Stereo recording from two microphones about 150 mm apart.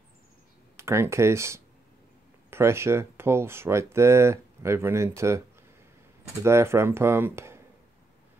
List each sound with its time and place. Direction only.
0.7 s speech: 20° right (ahead or behind)
6.4 s speech: 15° right (ahead or behind)